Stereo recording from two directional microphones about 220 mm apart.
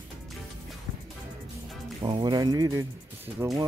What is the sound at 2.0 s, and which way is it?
Speech, 20° right (ahead or behind).